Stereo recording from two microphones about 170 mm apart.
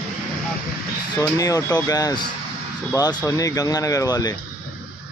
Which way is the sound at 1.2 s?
20° left (ahead or behind).